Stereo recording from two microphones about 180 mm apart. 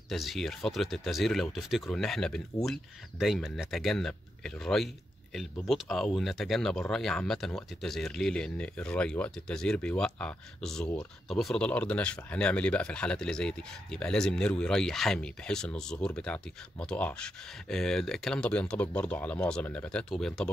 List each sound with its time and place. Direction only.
0.1 s speech: centre (ahead or behind)